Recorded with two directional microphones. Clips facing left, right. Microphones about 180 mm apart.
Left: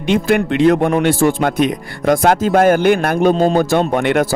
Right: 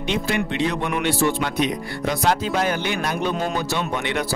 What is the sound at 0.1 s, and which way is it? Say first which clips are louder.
Speech: left 9 dB; 50° left (ahead or behind).